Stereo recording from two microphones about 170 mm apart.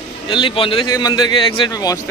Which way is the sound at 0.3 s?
30° left (ahead or behind).